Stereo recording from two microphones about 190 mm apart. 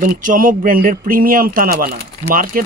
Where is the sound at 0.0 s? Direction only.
45° right (ahead or behind).